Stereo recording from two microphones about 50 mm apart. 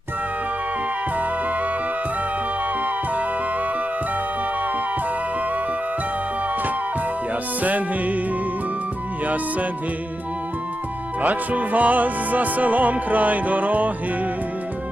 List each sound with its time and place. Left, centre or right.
7.6 s music: right
9.2 s music: right
11.2 s music: right